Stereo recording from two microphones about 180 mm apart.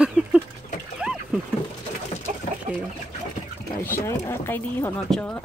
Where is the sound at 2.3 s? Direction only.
50° right (ahead or behind).